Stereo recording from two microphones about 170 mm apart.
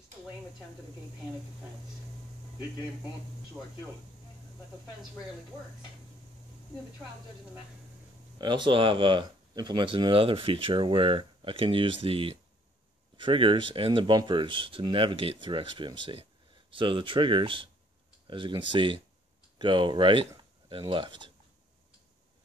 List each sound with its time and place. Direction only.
8.4 s speech: 25° right (ahead or behind)